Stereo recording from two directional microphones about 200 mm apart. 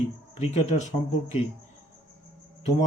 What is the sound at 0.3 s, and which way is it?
Speech, 35° left (ahead or behind).